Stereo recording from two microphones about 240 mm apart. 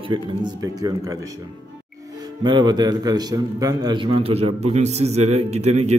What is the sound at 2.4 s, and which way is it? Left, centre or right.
A man's voice, centre.